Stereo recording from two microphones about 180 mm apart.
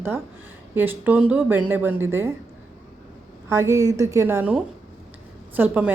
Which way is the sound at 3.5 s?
15° right (ahead or behind).